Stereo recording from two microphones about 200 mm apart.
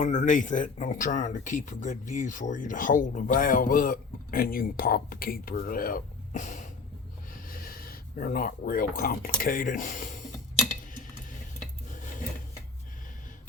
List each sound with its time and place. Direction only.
0.0 s speech: 35° left (ahead or behind)
7.4 s a sound: 45° left (ahead or behind)
9.4 s speech: 45° left (ahead or behind)
11.9 s filing: 40° left (ahead or behind)